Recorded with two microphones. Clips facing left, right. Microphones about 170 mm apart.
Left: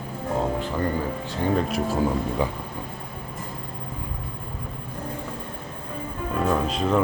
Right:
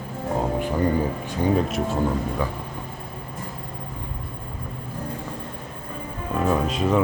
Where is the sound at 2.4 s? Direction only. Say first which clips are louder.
Left 1 dB; 15° left (ahead or behind).